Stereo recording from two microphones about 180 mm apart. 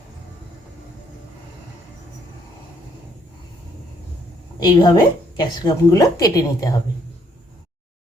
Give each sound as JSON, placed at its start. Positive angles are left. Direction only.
{"t": 4.6, "sound": "a woman's voice", "side_deg": 25}